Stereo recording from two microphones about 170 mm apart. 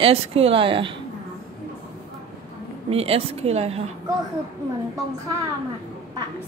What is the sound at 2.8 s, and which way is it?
A woman's voice, 35° right (ahead or behind).